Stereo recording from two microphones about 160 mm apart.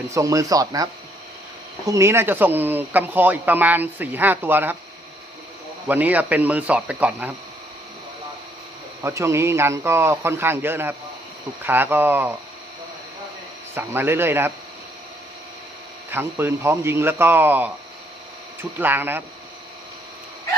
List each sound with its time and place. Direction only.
0.1 s speech: 20° right (ahead or behind)
1.9 s speech: 20° right (ahead or behind)
5.9 s speech: 10° right (ahead or behind)
9.0 s speech: 15° right (ahead or behind)
13.7 s speech: 15° right (ahead or behind)
16.1 s speech: 15° right (ahead or behind)
18.8 s speech: 10° right (ahead or behind)